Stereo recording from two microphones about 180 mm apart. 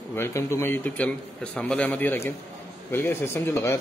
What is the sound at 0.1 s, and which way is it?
Speech, 15° left (ahead or behind).